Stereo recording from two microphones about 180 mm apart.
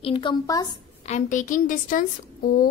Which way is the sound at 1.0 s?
40° left (ahead or behind).